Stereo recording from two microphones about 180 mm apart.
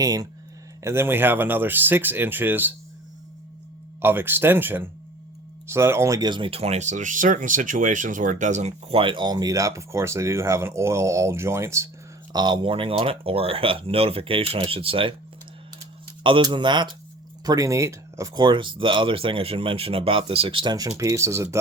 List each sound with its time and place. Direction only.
0.0 s speech: 20° right (ahead or behind)
4.0 s speech: 10° right (ahead or behind); by 15.1 s 30° right (ahead or behind)
16.2 s speech: 25° right (ahead or behind)